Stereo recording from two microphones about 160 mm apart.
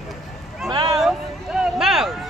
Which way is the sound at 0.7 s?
25° right (ahead or behind).